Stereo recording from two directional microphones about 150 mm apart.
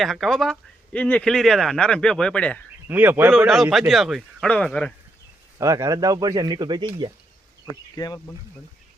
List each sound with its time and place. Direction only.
0.0 s speech: centre (ahead or behind)
2.8 s a man's voice: 10° right (ahead or behind)
3.3 s speech: centre (ahead or behind)
5.5 s speech: 20° right (ahead or behind)
7.9 s speech: 25° left (ahead or behind)